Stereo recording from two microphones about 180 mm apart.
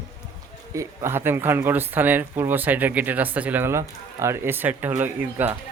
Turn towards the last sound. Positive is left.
turn(degrees=-10)  # may be behind; listen again after turning